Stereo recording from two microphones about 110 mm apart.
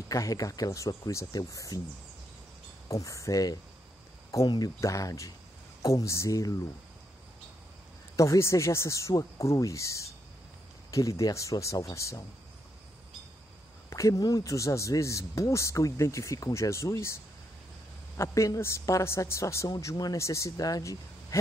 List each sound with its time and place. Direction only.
0.1 s speech: 30° left (ahead or behind)
2.9 s speech: 30° left (ahead or behind)
8.2 s speech: 30° left (ahead or behind)
13.8 s speech: 30° left (ahead or behind)